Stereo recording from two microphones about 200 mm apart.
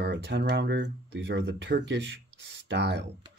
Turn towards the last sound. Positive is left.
turn(degrees=-60)  # may be behind; listen again after turning